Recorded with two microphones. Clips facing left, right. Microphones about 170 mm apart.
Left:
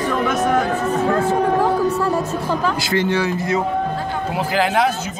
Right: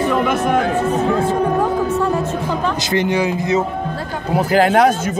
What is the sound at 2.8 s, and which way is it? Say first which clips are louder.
Speech: right 2 dB; 20° right (ahead or behind).